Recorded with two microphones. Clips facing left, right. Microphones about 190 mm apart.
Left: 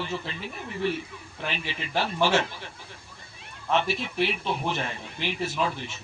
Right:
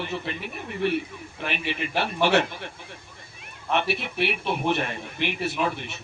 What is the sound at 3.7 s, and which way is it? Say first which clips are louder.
A man's voice: even; 60° right (ahead or behind).